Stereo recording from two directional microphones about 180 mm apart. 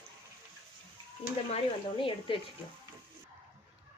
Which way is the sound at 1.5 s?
30° left (ahead or behind).